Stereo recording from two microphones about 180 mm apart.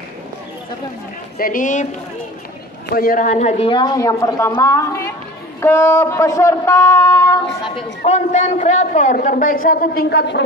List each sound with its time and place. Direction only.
1.4 s a man's voice: 50° left (ahead or behind)
3.0 s a woman's voice: 50° left (ahead or behind); by 7.4 s 20° left (ahead or behind)
7.7 s a man's voice: 40° left (ahead or behind); by 10.4 s 70° left (ahead or behind)